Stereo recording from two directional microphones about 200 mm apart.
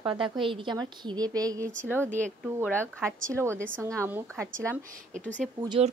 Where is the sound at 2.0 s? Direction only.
40° right (ahead or behind).